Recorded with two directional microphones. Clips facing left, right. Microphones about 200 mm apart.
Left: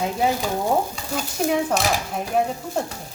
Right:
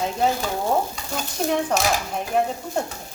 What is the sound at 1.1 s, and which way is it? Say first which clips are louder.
Speech: left 1 dB; 5° left (ahead or behind).